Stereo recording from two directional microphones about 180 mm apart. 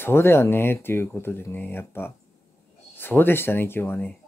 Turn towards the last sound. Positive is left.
turn(degrees=10)  # may be behind; listen again after turning